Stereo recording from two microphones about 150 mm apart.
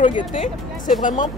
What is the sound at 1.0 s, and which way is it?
Speech, 60° left (ahead or behind).